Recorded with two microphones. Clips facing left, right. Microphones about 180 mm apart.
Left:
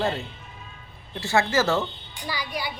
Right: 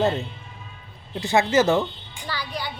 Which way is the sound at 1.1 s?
20° right (ahead or behind).